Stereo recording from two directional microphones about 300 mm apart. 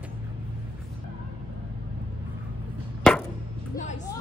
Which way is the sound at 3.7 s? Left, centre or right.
Left.